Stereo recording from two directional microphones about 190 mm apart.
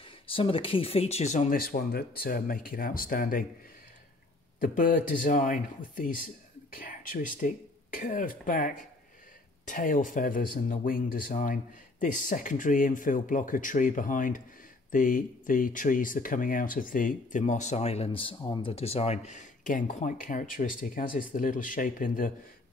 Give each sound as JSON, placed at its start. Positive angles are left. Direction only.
{"t": 0.0, "sound": "speech", "side_deg": 30}
{"t": 4.6, "sound": "speech", "side_deg": 45}